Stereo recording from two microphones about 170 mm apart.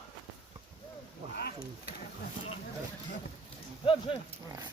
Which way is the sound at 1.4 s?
70° left (ahead or behind).